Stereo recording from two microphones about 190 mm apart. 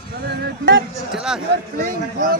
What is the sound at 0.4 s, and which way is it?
Speech, 70° right (ahead or behind).